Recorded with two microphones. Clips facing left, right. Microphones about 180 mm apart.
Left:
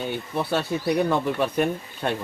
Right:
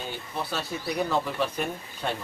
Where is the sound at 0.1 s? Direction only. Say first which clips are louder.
Left 8 dB; 60° left (ahead or behind).